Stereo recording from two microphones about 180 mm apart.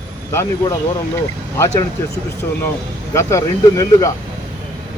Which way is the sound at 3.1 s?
15° left (ahead or behind).